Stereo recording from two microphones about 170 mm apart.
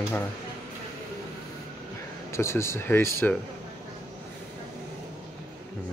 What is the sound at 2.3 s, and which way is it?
Speech, 15° left (ahead or behind).